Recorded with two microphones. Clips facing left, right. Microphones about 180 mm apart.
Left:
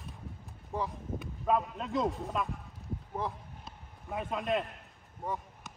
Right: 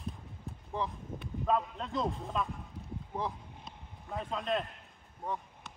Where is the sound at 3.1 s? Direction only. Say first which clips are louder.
Even; centre (ahead or behind).